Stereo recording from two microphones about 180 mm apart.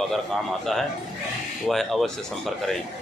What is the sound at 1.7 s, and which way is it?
Speech, centre (ahead or behind).